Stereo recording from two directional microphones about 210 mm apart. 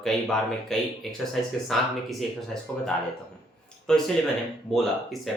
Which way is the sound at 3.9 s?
5° left (ahead or behind).